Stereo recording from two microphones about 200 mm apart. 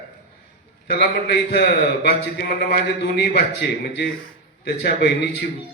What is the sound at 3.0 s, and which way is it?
A man's voice, 55° left (ahead or behind).